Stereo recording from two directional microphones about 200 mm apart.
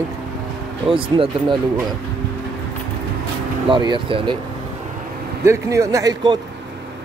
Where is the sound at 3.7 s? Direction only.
25° right (ahead or behind).